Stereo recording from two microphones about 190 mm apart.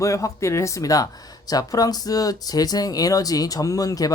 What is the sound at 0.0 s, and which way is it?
Speech, 15° left (ahead or behind).